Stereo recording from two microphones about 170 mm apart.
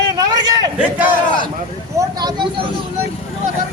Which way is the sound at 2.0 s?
25° right (ahead or behind).